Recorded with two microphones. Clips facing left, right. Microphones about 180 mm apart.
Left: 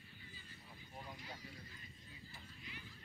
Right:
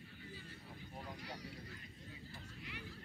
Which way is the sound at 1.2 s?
75° right (ahead or behind).